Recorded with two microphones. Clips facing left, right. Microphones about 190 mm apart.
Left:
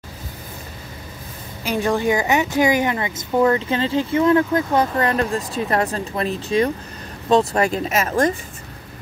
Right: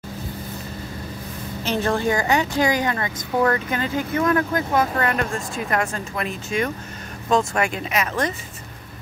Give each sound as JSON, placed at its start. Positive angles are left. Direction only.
{"t": 1.6, "sound": "a woman's voice", "side_deg": 15}